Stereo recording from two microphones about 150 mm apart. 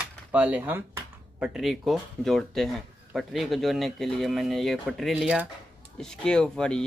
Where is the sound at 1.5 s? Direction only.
Centre (ahead or behind).